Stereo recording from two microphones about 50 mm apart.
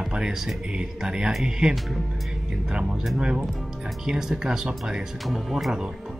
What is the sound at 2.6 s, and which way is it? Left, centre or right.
Speech, centre.